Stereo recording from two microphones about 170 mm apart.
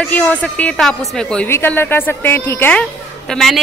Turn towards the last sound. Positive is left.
turn(degrees=0)  # may be behind; listen again after turning